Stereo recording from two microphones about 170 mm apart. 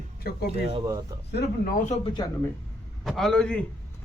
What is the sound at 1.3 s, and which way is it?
Speech, 75° left (ahead or behind).